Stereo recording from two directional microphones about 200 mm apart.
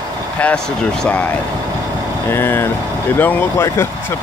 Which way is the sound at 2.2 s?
10° left (ahead or behind).